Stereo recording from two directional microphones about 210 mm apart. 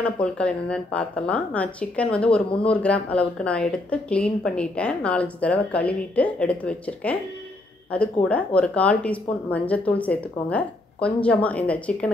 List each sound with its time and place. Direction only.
0.0 s speech: 5° left (ahead or behind)